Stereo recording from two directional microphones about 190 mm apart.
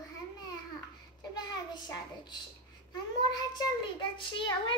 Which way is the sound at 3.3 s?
20° left (ahead or behind).